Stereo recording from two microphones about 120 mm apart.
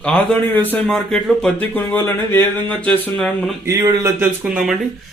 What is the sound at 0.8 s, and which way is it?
Speech, 5° left (ahead or behind).